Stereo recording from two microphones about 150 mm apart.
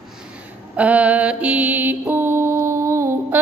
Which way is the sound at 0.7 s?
10° right (ahead or behind).